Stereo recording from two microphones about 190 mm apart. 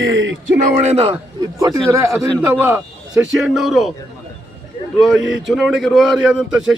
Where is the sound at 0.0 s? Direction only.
80° right.